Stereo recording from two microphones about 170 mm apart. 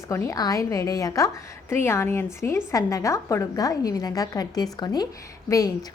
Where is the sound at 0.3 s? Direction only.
20° left (ahead or behind).